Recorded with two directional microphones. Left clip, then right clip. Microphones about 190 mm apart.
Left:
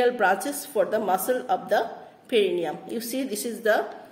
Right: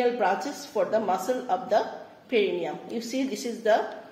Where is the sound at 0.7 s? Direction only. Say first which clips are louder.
Left 1 dB; 40° left (ahead or behind).